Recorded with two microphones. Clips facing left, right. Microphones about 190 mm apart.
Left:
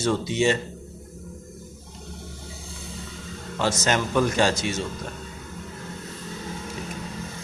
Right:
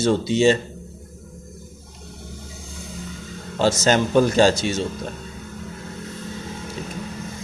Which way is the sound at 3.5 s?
30° right (ahead or behind).